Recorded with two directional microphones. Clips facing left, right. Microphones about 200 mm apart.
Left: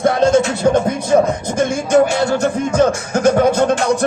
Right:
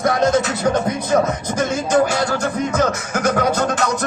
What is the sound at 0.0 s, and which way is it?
Music, 30° left (ahead or behind).